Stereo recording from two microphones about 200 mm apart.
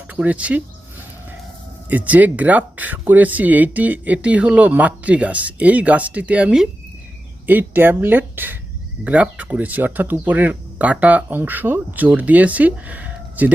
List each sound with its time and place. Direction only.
0.1 s speech: 5° right (ahead or behind)
1.9 s speech: 5° right (ahead or behind)